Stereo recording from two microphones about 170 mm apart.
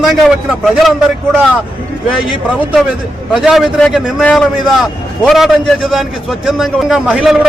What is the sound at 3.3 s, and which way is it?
A man's voice, centre (ahead or behind).